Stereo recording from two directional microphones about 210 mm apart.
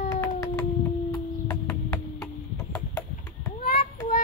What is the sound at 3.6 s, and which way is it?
Child singing, 40° left (ahead or behind).